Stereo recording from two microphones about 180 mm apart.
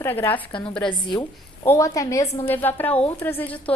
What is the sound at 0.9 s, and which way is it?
A woman's voice, 25° left (ahead or behind).